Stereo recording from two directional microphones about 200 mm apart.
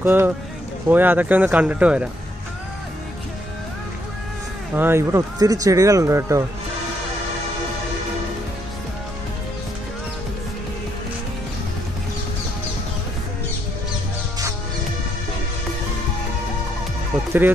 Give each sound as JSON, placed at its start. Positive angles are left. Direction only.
{"t": 0.0, "sound": "speech", "side_deg": -10}
{"t": 4.7, "sound": "speech", "side_deg": -10}
{"t": 17.1, "sound": "music", "side_deg": -5}